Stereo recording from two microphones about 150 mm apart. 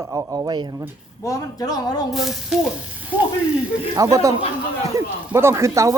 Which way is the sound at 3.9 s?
20° right (ahead or behind).